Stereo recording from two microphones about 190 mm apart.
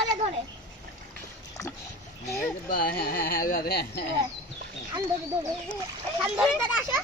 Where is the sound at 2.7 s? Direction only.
50° left (ahead or behind).